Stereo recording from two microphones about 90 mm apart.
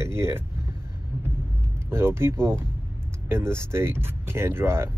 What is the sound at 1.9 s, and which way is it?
Speech, 30° right (ahead or behind).